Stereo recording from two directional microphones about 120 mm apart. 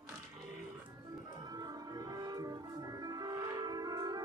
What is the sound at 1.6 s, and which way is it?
Music, 30° right (ahead or behind).